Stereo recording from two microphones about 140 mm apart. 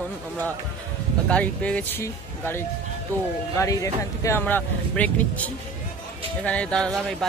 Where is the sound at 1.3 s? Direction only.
10° left (ahead or behind).